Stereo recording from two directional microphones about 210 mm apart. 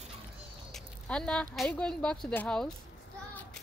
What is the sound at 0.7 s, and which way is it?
Speech, 5° left (ahead or behind).